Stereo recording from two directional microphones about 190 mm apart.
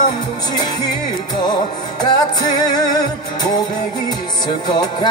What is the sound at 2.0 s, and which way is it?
Music, 20° left (ahead or behind).